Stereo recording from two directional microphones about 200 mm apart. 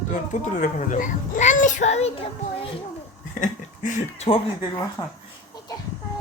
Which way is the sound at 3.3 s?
40° left (ahead or behind).